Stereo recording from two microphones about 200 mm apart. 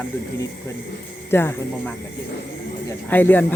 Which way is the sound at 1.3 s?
10° left (ahead or behind).